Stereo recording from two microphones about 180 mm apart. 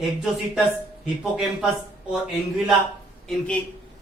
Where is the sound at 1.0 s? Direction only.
Centre (ahead or behind).